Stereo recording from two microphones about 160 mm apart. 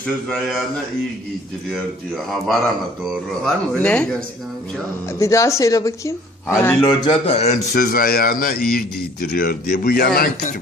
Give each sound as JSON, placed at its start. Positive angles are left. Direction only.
{"t": 0.3, "sound": "speech", "side_deg": 0}
{"t": 3.1, "sound": "speech", "side_deg": 5}
{"t": 5.2, "sound": "speech", "side_deg": 20}
{"t": 6.8, "sound": "speech", "side_deg": 35}
{"t": 7.7, "sound": "a man's voice", "side_deg": 65}